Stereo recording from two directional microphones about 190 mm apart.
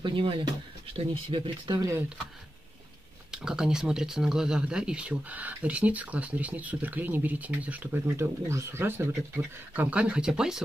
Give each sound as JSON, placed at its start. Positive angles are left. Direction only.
{"t": 0.0, "sound": "speech", "side_deg": -30}
{"t": 3.3, "sound": "speech", "side_deg": -5}